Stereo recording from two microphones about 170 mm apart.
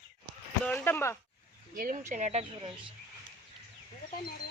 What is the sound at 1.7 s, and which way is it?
Speech, 55° right (ahead or behind).